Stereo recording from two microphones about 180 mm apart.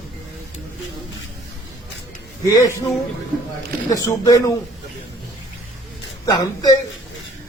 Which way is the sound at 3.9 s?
20° left (ahead or behind).